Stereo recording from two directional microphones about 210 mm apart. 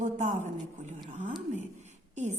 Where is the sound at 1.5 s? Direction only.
35° right (ahead or behind).